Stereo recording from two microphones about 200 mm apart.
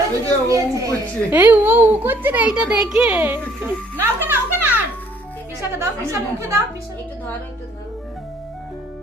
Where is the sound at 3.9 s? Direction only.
10° right (ahead or behind).